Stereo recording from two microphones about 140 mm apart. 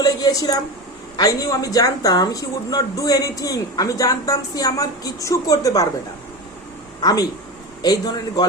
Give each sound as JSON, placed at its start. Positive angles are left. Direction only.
{"t": 0.0, "sound": "a sound", "side_deg": 25}
{"t": 1.1, "sound": "speech", "side_deg": 25}
{"t": 7.0, "sound": "speech", "side_deg": 25}